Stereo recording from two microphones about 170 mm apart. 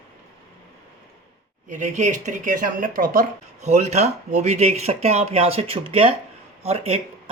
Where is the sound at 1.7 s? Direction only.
45° right (ahead or behind).